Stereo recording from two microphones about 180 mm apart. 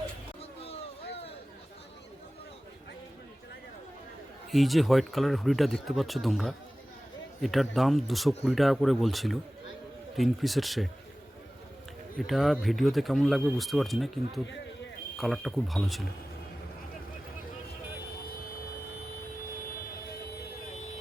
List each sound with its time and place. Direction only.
0.6 s a sound: 35° left (ahead or behind)
4.5 s speech: centre (ahead or behind)
12.2 s speech: centre (ahead or behind)